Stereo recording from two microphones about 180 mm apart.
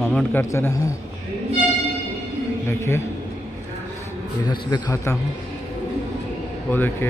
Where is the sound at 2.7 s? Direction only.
15° left (ahead or behind).